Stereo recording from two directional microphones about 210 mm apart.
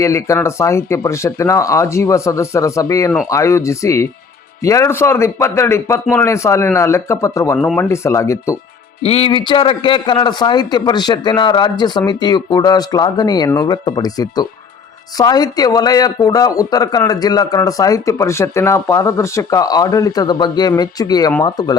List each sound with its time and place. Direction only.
0.0 s speech: 15° left (ahead or behind)
9.0 s speech: 25° left (ahead or behind)